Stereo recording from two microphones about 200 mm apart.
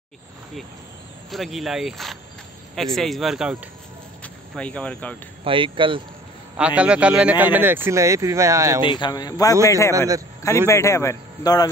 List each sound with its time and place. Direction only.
1.3 s speech: centre (ahead or behind)
4.2 s a sound: 5° left (ahead or behind)
5.4 s speech: 25° right (ahead or behind)
6.5 s a man's voice: 5° right (ahead or behind)
8.8 s a man's voice: 25° left (ahead or behind)
9.9 s a man's voice: 15° right (ahead or behind)
10.7 s a man's voice: 15° left (ahead or behind)